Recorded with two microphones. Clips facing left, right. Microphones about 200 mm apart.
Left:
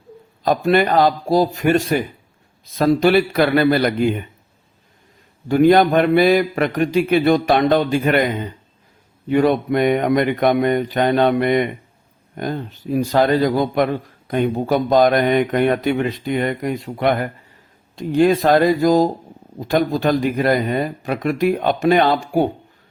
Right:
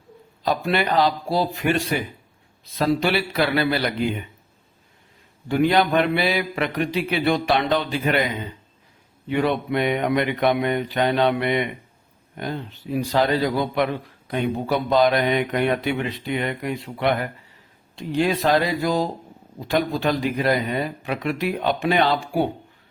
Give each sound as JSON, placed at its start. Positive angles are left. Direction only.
{"t": 0.4, "sound": "a man's voice", "side_deg": 45}
{"t": 5.5, "sound": "a man's voice", "side_deg": 45}